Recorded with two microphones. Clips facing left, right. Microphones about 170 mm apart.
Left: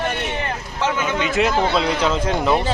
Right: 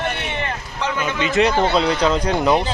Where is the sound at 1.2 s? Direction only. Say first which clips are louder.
Right 3 dB; centre (ahead or behind).